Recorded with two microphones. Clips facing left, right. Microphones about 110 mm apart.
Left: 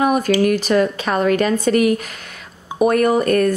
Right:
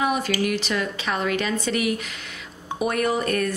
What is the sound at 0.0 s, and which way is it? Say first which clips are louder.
A woman's voice: left 8 dB; 45° left (ahead or behind).